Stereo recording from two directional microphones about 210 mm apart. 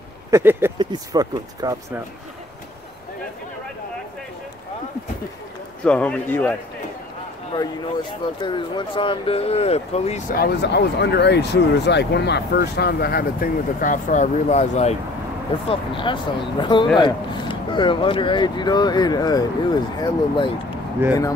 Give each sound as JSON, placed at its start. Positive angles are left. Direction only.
{"t": 0.3, "sound": "speech", "side_deg": -10}
{"t": 5.9, "sound": "speech", "side_deg": 5}
{"t": 8.4, "sound": "speech", "side_deg": 20}
{"t": 10.3, "sound": "speech", "side_deg": 50}
{"t": 21.0, "sound": "speech", "side_deg": -10}